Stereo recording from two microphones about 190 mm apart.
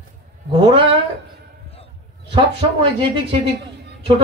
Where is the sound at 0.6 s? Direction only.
25° right (ahead or behind).